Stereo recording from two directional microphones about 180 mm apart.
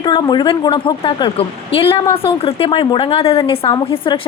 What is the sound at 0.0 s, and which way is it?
A woman's voice, 25° left (ahead or behind).